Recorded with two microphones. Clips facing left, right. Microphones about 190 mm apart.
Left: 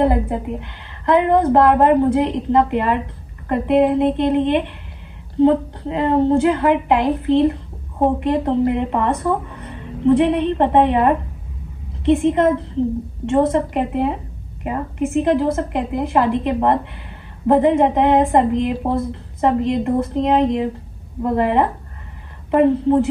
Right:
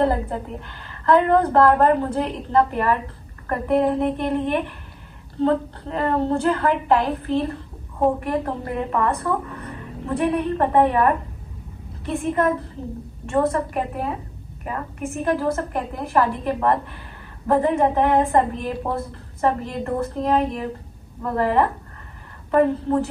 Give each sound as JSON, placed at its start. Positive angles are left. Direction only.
{"t": 0.0, "sound": "a woman's voice", "side_deg": 15}